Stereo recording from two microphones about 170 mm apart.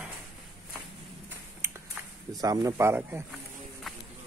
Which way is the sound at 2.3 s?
20° right (ahead or behind).